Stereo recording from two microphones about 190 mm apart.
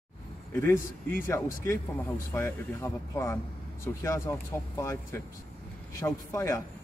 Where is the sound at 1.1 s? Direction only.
15° left (ahead or behind).